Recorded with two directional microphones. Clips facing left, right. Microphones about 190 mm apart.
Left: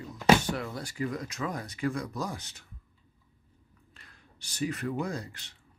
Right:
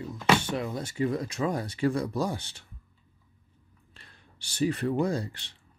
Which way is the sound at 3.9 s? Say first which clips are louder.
Right 2 dB; 30° right (ahead or behind).